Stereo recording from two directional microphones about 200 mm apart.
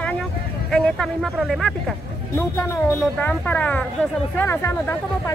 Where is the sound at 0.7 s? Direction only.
5° left (ahead or behind).